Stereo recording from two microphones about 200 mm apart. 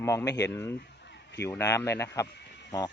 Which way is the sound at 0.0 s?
15° left (ahead or behind).